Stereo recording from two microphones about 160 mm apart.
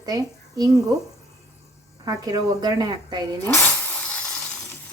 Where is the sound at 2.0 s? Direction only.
25° right (ahead or behind).